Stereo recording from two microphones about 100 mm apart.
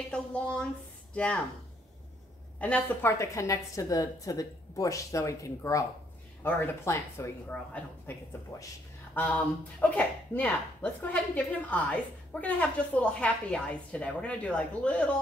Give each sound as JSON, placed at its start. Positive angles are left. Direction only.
{"t": 0.1, "sound": "speech", "side_deg": 10}
{"t": 2.6, "sound": "a woman's voice", "side_deg": 20}
{"t": 7.4, "sound": "speech", "side_deg": 15}